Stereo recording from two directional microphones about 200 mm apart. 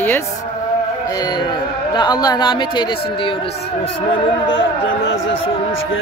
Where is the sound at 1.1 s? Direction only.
20° left (ahead or behind).